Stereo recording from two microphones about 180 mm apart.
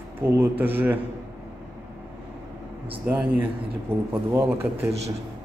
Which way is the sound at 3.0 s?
10° right (ahead or behind).